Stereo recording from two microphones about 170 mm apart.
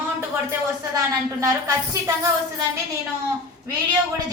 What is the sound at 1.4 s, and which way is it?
Speech, 20° right (ahead or behind).